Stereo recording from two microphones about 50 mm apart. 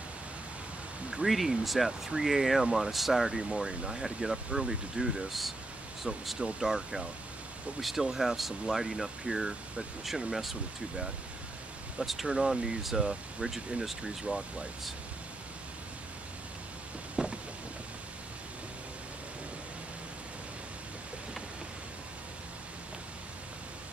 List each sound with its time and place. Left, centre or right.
1.1 s speech: centre
6.1 s speech: centre
17.2 s vehicle: centre